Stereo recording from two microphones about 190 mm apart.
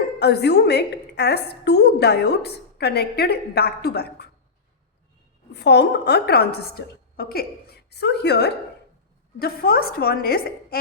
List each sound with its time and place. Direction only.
0.2 s a woman's voice: 60° left (ahead or behind)
5.5 s a woman's voice: 60° left (ahead or behind)